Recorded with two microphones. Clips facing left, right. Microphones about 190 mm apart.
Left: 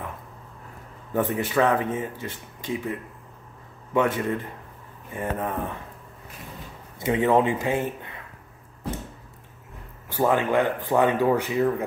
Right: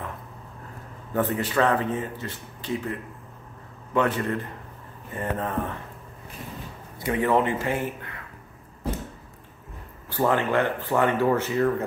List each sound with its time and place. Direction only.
1.1 s speech: 15° left (ahead or behind)
7.0 s speech: 20° left (ahead or behind)
10.1 s speech: 15° left (ahead or behind)